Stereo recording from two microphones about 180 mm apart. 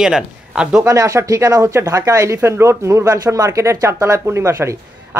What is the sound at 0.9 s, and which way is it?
Speech, 15° right (ahead or behind).